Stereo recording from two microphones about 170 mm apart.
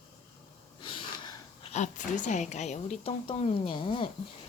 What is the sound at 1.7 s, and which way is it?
A woman's voice, 45° left (ahead or behind).